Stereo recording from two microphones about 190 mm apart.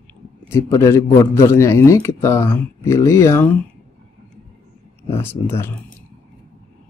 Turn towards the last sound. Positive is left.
turn(degrees=10)  # may be behind; listen again after turning